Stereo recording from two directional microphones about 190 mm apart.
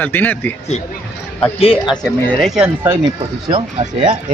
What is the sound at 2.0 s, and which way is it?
Speech, centre (ahead or behind).